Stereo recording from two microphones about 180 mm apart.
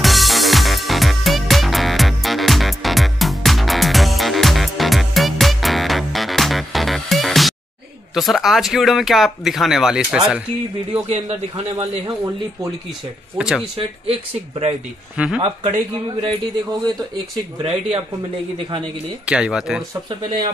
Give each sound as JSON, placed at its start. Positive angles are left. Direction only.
{"t": 0.0, "sound": "music", "side_deg": 0}
{"t": 8.1, "sound": "speech", "side_deg": 0}
{"t": 10.9, "sound": "a man's voice", "side_deg": -35}
{"t": 13.4, "sound": "speech", "side_deg": -5}
{"t": 15.1, "sound": "speech", "side_deg": -5}
{"t": 17.6, "sound": "a man's voice", "side_deg": -35}
{"t": 19.2, "sound": "speech", "side_deg": -5}